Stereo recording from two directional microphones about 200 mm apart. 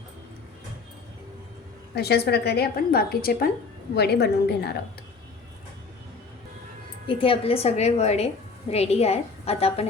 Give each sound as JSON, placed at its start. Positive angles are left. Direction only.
{"t": 2.0, "sound": "a woman's voice", "side_deg": 55}
{"t": 7.1, "sound": "a woman's voice", "side_deg": 25}